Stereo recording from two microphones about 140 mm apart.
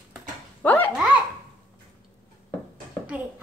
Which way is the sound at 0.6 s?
15° left (ahead or behind).